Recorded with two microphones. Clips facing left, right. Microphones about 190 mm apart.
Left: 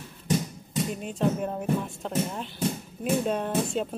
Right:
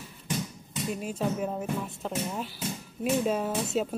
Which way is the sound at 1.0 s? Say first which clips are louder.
Left 2 dB; 5° right (ahead or behind).